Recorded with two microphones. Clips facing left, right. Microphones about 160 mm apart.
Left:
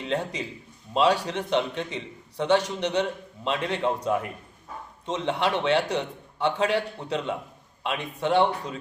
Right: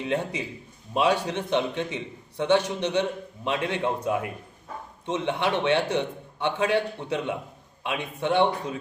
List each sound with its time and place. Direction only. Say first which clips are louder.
0.0 s a man's voice: right 1 dB; 20° right (ahead or behind)